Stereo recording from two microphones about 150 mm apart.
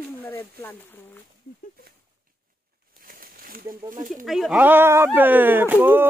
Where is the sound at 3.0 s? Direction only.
75° right (ahead or behind).